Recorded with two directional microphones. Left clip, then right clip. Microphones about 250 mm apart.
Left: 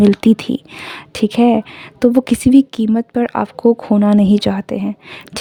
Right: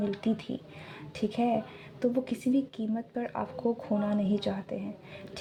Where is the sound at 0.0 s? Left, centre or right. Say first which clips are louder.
Left 19 dB; left.